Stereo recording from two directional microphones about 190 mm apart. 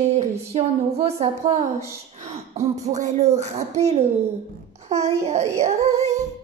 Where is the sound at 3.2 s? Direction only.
35° right (ahead or behind).